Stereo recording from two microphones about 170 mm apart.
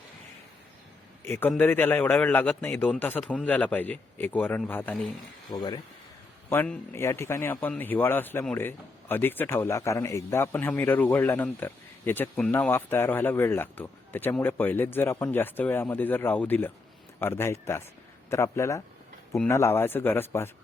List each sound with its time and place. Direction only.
1.2 s a man's voice: 10° left (ahead or behind)
5.5 s speech: 25° left (ahead or behind)
6.5 s a man's voice: 10° left (ahead or behind)